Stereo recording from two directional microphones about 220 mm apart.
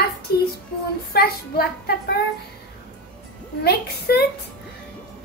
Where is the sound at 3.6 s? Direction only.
45° left (ahead or behind).